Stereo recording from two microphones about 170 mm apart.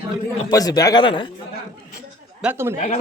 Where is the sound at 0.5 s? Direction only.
20° left (ahead or behind).